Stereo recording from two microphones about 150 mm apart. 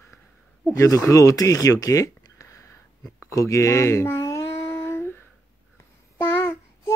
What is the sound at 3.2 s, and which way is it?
Child singing, 20° left (ahead or behind).